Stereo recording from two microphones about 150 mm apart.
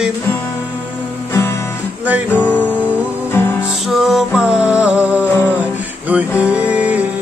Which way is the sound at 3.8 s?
Centre (ahead or behind).